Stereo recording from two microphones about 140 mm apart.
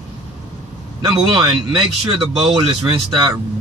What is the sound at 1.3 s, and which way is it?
Speech, 35° right (ahead or behind).